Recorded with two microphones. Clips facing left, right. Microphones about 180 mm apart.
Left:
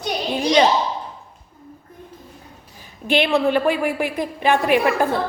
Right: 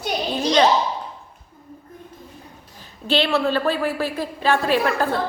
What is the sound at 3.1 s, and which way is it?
A woman's voice, 15° left (ahead or behind).